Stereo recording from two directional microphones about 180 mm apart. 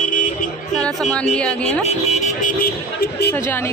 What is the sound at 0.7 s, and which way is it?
A man's voice, 5° left (ahead or behind).